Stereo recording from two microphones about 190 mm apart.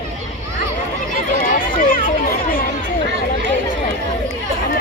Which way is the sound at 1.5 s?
45° left (ahead or behind).